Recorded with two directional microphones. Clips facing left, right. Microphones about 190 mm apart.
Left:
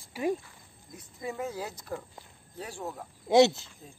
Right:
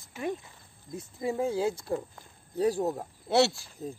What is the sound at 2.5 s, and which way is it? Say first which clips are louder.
Speech: right 12 dB; 40° right (ahead or behind).